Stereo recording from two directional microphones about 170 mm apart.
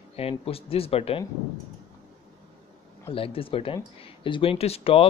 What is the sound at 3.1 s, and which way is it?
Speech, 35° left (ahead or behind).